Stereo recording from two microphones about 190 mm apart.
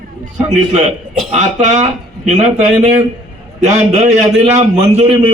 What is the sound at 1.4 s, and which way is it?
A man's voice, 35° right (ahead or behind).